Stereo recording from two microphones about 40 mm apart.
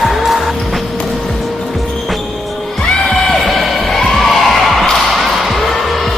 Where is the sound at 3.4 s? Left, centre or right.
Centre.